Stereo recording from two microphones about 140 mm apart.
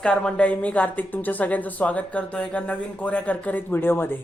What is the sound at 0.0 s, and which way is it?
Speech, 5° left (ahead or behind).